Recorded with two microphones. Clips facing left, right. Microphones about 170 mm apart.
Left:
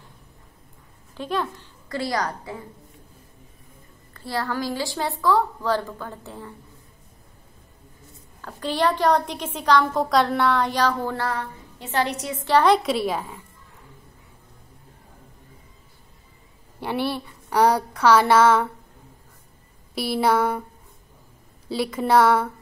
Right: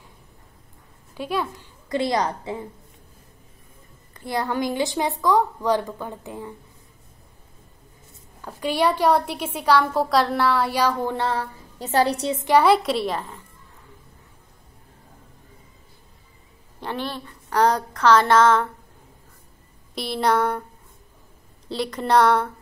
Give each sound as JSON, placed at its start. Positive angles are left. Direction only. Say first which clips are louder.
{"t": 1.1, "sound": "a woman's voice", "louder": "even", "side_deg": -10}
{"t": 4.1, "sound": "a woman's voice", "louder": "right 2 dB", "side_deg": -20}
{"t": 8.4, "sound": "a woman's voice", "louder": "right 1 dB", "side_deg": -10}
{"t": 11.1, "sound": "a sound", "louder": "right 2 dB", "side_deg": -25}
{"t": 11.8, "sound": "a woman's voice", "louder": "right 4 dB", "side_deg": -35}
{"t": 12.4, "sound": "a woman's voice", "louder": "right 1 dB", "side_deg": -10}
{"t": 16.8, "sound": "a woman's voice", "louder": "left 4 dB", "side_deg": 10}
{"t": 20.0, "sound": "a woman's voice", "louder": "left 1 dB", "side_deg": 5}
{"t": 21.6, "sound": "a woman's voice", "louder": "left 1 dB", "side_deg": 5}